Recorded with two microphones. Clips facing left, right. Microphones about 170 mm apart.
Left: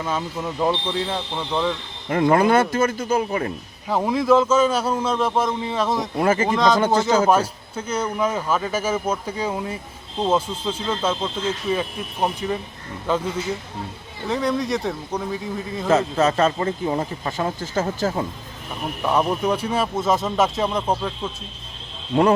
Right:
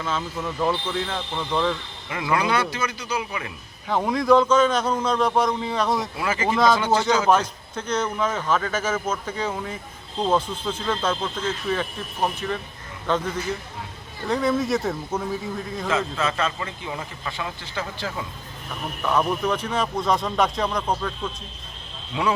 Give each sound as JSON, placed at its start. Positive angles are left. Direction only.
{"t": 0.0, "sound": "a man's voice", "side_deg": 15}
{"t": 2.0, "sound": "speech", "side_deg": 45}
{"t": 3.8, "sound": "a man's voice", "side_deg": 5}
{"t": 6.1, "sound": "speech", "side_deg": 45}
{"t": 7.3, "sound": "a man's voice", "side_deg": 10}
{"t": 15.9, "sound": "a man's voice", "side_deg": 40}
{"t": 18.7, "sound": "a man's voice", "side_deg": 15}
{"t": 22.1, "sound": "speech", "side_deg": 50}